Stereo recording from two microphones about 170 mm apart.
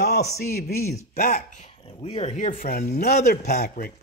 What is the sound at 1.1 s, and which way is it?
Speech, 60° left (ahead or behind).